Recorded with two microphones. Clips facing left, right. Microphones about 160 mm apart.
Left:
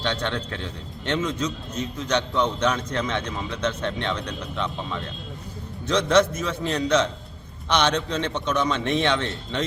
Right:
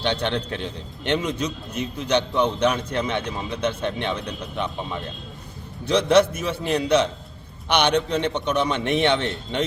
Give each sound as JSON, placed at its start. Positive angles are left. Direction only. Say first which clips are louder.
{"t": 0.2, "sound": "a man's voice", "louder": "right 3 dB", "side_deg": -20}